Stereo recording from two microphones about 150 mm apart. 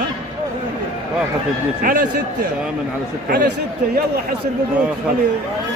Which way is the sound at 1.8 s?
70° right (ahead or behind).